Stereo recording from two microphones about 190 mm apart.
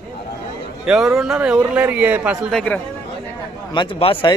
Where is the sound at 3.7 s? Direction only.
25° left (ahead or behind).